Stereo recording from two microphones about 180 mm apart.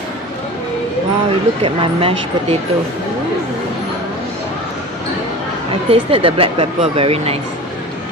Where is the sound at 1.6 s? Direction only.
30° right (ahead or behind).